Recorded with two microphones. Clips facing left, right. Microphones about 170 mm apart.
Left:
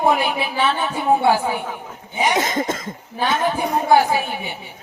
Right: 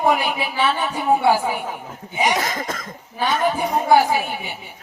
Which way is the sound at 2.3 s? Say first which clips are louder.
Left 3 dB; 25° left (ahead or behind).